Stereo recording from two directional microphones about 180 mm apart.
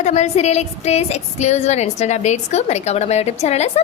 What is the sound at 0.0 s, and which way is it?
A woman's voice, 40° left (ahead or behind).